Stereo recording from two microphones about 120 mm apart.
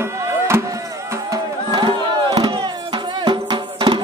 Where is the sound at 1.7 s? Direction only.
35° right (ahead or behind).